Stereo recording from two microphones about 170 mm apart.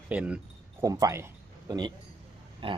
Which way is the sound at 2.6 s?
30° right (ahead or behind).